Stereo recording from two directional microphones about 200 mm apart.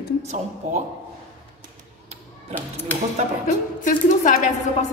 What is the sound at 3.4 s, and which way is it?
Speech, 40° left (ahead or behind).